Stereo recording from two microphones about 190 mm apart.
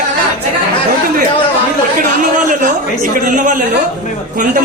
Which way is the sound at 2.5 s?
45° right (ahead or behind).